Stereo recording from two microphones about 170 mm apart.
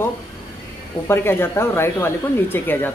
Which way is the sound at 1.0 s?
15° left (ahead or behind).